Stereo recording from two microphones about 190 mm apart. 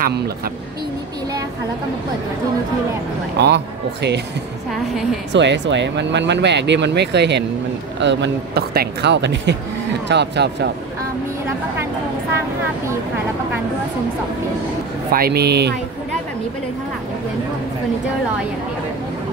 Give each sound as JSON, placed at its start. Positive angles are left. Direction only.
{"t": 3.3, "sound": "speech", "side_deg": -65}
{"t": 5.3, "sound": "speech", "side_deg": -70}
{"t": 15.0, "sound": "speech", "side_deg": -55}